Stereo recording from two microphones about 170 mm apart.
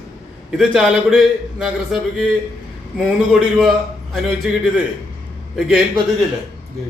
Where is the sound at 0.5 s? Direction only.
Centre (ahead or behind).